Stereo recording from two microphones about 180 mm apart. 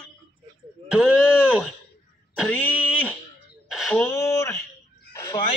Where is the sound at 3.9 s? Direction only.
15° left (ahead or behind).